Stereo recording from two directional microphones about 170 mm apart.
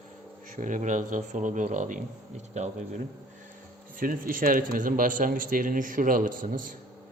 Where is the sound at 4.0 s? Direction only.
55° right (ahead or behind).